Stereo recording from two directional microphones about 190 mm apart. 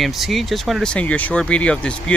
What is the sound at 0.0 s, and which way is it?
Speech, centre (ahead or behind).